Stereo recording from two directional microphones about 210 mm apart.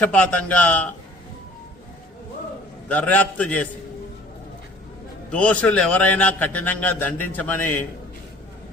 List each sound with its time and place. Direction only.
0.0 s a man's voice: 5° left (ahead or behind)
2.9 s a man's voice: 5° left (ahead or behind)
5.3 s a man's voice: 5° left (ahead or behind)